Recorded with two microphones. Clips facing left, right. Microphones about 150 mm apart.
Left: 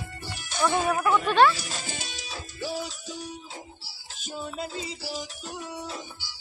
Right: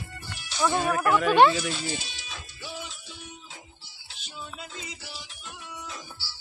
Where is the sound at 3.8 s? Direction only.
40° left (ahead or behind).